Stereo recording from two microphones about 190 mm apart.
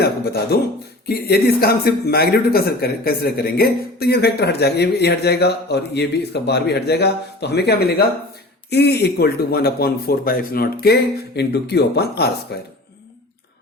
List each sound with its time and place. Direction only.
0.0 s speech: 55° left (ahead or behind)